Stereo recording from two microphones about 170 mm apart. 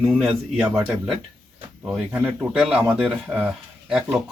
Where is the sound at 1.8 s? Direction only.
5° right (ahead or behind).